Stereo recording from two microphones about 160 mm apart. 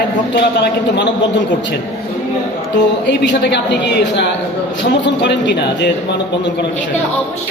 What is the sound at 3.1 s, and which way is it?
A woman's voice, 90° left.